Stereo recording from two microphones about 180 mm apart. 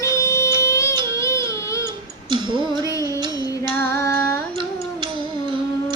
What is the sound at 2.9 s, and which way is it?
Music, 20° left (ahead or behind).